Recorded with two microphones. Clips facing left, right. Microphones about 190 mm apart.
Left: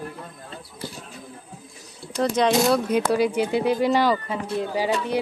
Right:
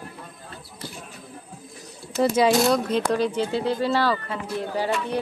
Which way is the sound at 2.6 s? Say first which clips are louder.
Left 1 dB; 10° left (ahead or behind).